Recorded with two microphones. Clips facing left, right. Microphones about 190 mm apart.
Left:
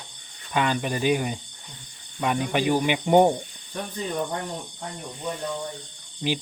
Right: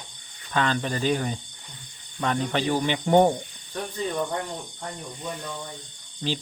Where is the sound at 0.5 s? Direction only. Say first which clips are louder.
Left 1 dB; 15° left (ahead or behind).